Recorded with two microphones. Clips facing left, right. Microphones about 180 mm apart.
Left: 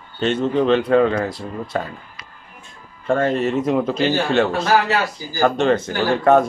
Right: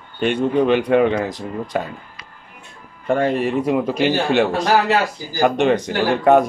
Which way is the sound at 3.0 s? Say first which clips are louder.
Even; 15° right (ahead or behind).